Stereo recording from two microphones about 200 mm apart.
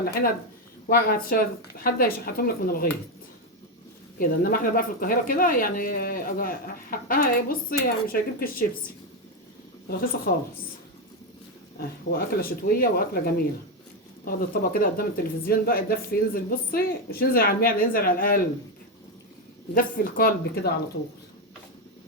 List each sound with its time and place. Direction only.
0.0 s speech: 50° left (ahead or behind)
4.2 s speech: 45° left (ahead or behind)
9.9 s speech: 45° left (ahead or behind)
12.1 s speech: 45° left (ahead or behind)
19.7 s speech: 45° left (ahead or behind)